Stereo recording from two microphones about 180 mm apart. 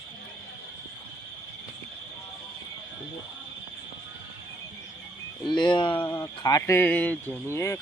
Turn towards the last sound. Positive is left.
turn(degrees=15)  # may be behind; listen again after turning